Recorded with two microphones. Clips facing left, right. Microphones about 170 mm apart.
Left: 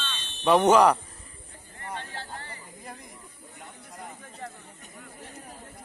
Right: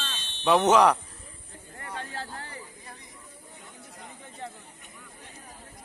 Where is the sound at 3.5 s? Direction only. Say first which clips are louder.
Left 5 dB; 55° left (ahead or behind).